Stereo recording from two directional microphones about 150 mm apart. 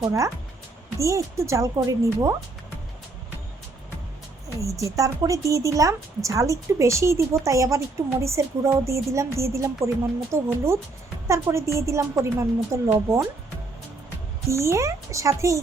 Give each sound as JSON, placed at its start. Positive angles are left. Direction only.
{"t": 0.0, "sound": "a woman's voice", "side_deg": -20}
{"t": 4.6, "sound": "a woman's voice", "side_deg": -20}
{"t": 14.4, "sound": "a woman's voice", "side_deg": -20}